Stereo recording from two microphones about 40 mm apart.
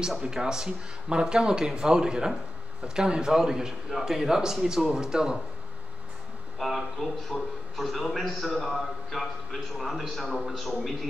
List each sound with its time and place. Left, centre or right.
0.0 s a man's voice: centre
6.6 s a man's voice: centre
10.2 s a man's voice: centre